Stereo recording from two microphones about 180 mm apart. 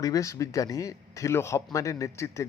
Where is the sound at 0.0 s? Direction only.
20° left (ahead or behind).